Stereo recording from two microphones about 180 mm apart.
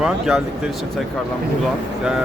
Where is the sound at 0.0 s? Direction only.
5° right (ahead or behind).